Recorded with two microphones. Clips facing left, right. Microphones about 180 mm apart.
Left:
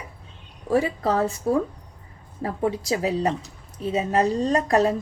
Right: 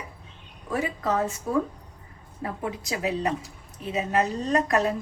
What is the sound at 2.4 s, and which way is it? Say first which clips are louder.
A woman's voice: left 6 dB; 35° left (ahead or behind).